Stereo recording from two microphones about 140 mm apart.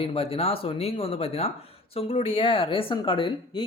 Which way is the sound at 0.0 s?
45° left (ahead or behind).